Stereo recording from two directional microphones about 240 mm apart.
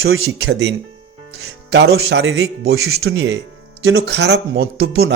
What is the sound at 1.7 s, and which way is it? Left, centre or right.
Speech, right.